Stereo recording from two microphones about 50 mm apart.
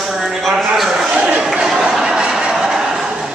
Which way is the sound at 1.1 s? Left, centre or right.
Right.